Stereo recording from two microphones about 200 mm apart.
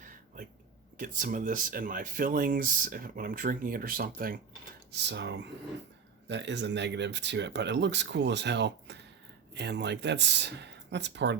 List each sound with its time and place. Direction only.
0.9 s speech: 40° right (ahead or behind)
4.9 s speech: 60° right (ahead or behind)